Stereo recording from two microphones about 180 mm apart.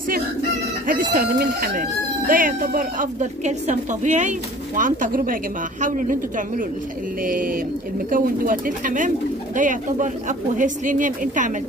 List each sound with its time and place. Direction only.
1.1 s speech: 55° right (ahead or behind)